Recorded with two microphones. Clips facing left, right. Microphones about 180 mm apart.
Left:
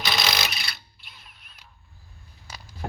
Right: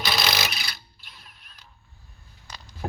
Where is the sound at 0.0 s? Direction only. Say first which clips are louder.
Right 1 dB; centre (ahead or behind).